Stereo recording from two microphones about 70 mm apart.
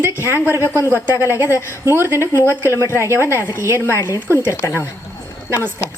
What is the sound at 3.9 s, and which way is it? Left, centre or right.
Speech, left.